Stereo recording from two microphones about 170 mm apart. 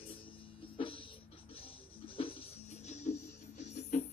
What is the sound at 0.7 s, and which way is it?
Music, 30° left (ahead or behind).